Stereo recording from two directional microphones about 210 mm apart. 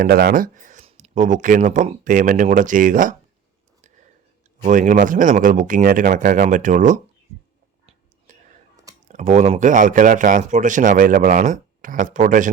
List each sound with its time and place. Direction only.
0.0 s speech: 45° right (ahead or behind)
3.8 s a sound: 35° right (ahead or behind)
4.6 s speech: 35° right (ahead or behind)
8.3 s whispering: 35° right (ahead or behind)
8.7 s clicking: 15° right (ahead or behind)
9.0 s speech: 35° right (ahead or behind)